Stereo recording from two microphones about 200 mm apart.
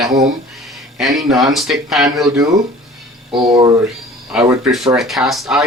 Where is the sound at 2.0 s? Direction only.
15° right (ahead or behind).